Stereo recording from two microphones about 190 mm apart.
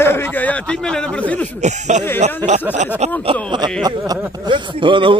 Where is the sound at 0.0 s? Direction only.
10° left (ahead or behind).